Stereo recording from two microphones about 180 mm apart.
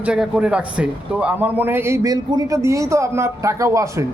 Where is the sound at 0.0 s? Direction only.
5° right (ahead or behind).